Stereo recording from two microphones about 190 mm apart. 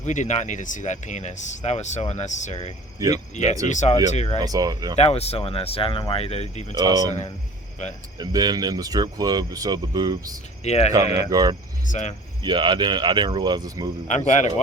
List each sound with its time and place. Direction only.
0.0 s speech: 40° left (ahead or behind)
3.0 s speech: 15° right (ahead or behind)
3.7 s speech: 40° left (ahead or behind)
4.4 s speech: 20° right (ahead or behind)
4.9 s speech: 35° left (ahead or behind)
6.7 s speech: 20° right (ahead or behind)
7.1 s speech: 35° left (ahead or behind)
8.2 s speech: 20° right (ahead or behind)
10.6 s speech: 35° left (ahead or behind)
11.3 s speech: 20° right (ahead or behind)
11.9 s speech: 40° left (ahead or behind)
12.4 s speech: 25° right (ahead or behind)
14.1 s speech: 40° left (ahead or behind)